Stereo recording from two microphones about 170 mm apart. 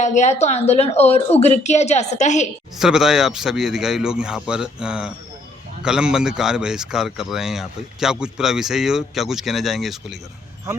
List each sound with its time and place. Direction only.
0.0 s a woman's voice: 45° left (ahead or behind)
2.7 s speech: 5° right (ahead or behind)